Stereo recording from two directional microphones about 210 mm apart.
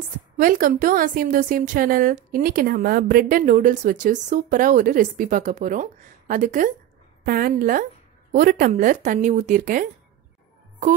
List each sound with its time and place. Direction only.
0.4 s a woman's voice: 40° right (ahead or behind)